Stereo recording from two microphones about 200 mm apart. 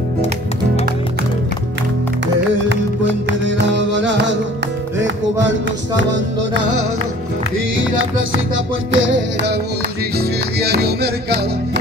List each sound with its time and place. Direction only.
3.3 s music: 60° right (ahead or behind)
8.9 s music: 60° right (ahead or behind)